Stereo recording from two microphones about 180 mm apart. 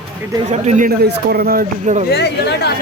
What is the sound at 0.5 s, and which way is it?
Speech, 40° right (ahead or behind).